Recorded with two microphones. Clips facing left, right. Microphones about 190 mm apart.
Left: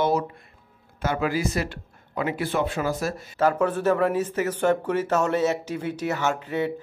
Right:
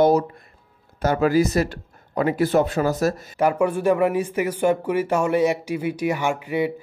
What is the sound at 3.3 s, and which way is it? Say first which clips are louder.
Speech: even; 15° right (ahead or behind).